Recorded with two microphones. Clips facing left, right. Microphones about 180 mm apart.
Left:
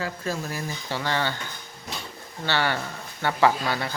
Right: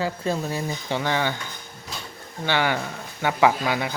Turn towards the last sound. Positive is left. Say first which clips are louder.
# right 2 dB
turn(degrees=-15)  # may be behind; listen again after turning